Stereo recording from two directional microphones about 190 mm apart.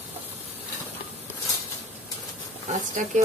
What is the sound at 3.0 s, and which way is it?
Speech, 40° right (ahead or behind).